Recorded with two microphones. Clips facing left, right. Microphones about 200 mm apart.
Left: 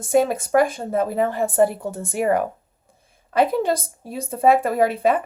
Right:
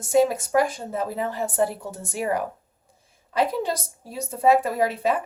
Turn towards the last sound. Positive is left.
turn(degrees=55)  # may be behind; listen again after turning